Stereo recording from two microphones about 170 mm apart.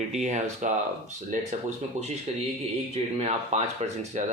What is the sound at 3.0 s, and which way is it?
Speech, 35° right (ahead or behind).